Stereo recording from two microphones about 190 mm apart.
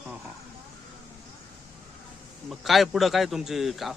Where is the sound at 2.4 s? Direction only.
Centre (ahead or behind).